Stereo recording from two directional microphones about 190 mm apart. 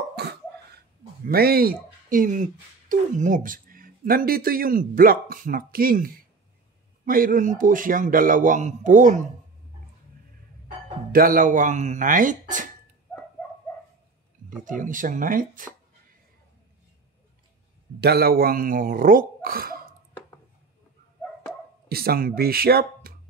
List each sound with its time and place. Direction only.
0.1 s cough: 60° right (ahead or behind)
1.2 s speech: 50° right (ahead or behind)
11.1 s speech: 50° right (ahead or behind)
14.6 s speech: 45° right (ahead or behind)
18.0 s speech: 55° right (ahead or behind)
21.8 s speech: 55° right (ahead or behind)